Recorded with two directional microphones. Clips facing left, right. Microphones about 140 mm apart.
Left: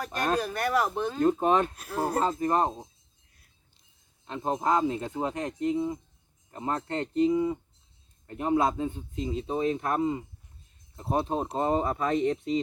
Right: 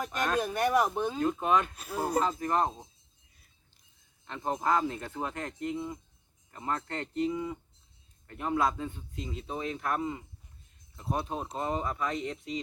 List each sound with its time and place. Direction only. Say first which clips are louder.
0.3 s speech: right 3 dB; 20° right (ahead or behind)
1.2 s speech: left 5 dB; 40° left (ahead or behind)
1.7 s speech: left 3 dB; 5° right (ahead or behind)
2.4 s speech: left 3 dB; 30° left (ahead or behind)
4.3 s speech: left 3 dB; 20° left (ahead or behind)